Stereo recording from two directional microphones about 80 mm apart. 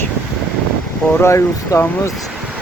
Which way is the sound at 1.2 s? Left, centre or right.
Left.